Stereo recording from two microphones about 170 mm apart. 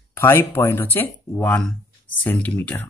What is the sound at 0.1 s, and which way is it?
Speech, 15° left (ahead or behind).